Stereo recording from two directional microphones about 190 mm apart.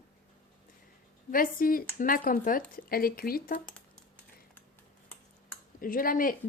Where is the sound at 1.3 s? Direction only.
50° left (ahead or behind).